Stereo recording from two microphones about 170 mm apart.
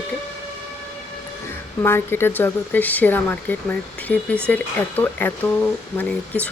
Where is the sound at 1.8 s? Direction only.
15° left (ahead or behind).